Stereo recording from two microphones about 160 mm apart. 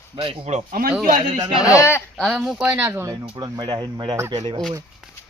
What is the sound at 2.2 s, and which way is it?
Speech, 5° left (ahead or behind).